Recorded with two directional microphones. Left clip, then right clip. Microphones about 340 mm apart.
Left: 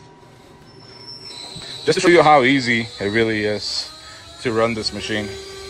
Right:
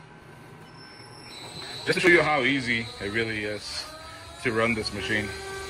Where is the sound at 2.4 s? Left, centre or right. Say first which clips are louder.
Left 9 dB; left.